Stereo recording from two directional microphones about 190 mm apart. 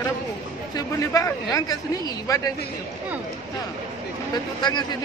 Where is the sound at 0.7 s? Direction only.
20° left (ahead or behind).